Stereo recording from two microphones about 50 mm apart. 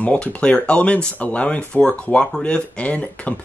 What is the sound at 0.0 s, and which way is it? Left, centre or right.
Speech, left.